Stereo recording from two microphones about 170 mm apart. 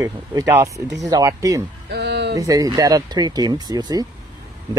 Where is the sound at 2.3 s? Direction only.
20° right (ahead or behind).